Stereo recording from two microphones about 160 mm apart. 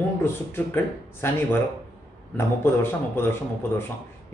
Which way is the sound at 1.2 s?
15° left (ahead or behind).